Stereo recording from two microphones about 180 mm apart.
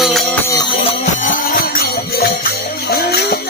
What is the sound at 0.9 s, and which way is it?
Music, 45° left (ahead or behind).